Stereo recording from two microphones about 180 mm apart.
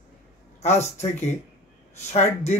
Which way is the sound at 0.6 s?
40° left (ahead or behind).